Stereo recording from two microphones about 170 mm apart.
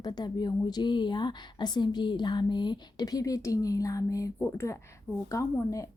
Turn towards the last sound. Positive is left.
turn(degrees=20)  # may be behind; listen again after turning